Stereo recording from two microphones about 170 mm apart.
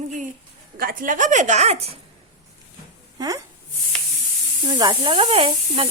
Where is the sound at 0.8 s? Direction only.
55° right (ahead or behind); by 2.0 s 40° right (ahead or behind).